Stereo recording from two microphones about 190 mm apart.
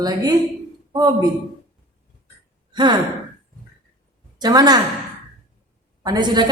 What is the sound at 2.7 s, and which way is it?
Sigh, 25° right (ahead or behind).